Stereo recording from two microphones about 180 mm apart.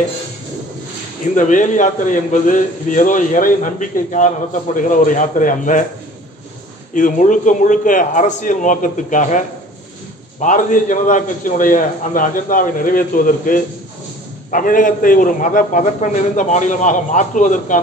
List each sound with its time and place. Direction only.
1.3 s a man's voice: 45° left (ahead or behind)
6.9 s a man's voice: 45° left (ahead or behind)
10.4 s a man's voice: 45° left (ahead or behind)